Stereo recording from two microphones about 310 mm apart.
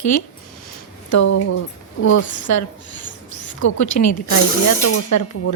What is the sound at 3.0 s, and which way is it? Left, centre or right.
Mouse, left.